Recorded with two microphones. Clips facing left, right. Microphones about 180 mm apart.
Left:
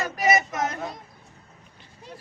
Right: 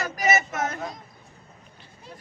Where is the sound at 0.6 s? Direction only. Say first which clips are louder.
Left 1 dB; 10° left (ahead or behind).